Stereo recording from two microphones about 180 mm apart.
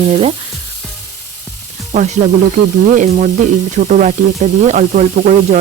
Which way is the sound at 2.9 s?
45° right (ahead or behind).